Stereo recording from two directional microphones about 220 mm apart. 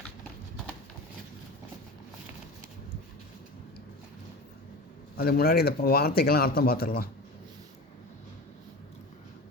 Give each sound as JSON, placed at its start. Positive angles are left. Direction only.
{"t": 5.1, "sound": "speech", "side_deg": 45}